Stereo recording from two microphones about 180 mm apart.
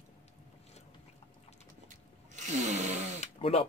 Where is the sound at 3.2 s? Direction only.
35° left (ahead or behind).